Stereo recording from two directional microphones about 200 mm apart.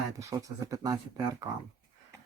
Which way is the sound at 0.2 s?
15° right (ahead or behind).